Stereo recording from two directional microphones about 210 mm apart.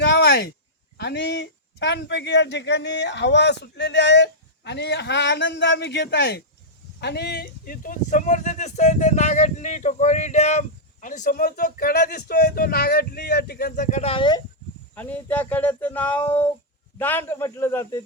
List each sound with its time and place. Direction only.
0.0 s a sound: 50° left (ahead or behind)
0.9 s speech: 55° left (ahead or behind); by 14.4 s 20° left (ahead or behind)
14.9 s speech: 10° left (ahead or behind)